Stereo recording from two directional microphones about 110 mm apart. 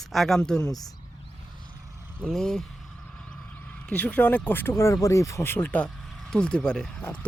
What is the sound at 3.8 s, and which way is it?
Speech, 15° left (ahead or behind).